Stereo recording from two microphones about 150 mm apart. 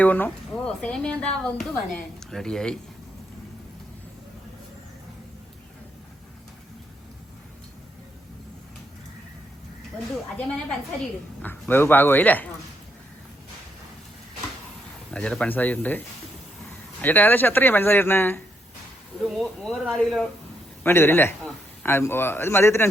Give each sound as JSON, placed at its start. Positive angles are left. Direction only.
{"t": 0.0, "sound": "speech", "side_deg": 10}
{"t": 11.7, "sound": "speech", "side_deg": 15}
{"t": 15.1, "sound": "speech", "side_deg": 5}
{"t": 19.3, "sound": "speech", "side_deg": 0}
{"t": 20.8, "sound": "speech", "side_deg": 15}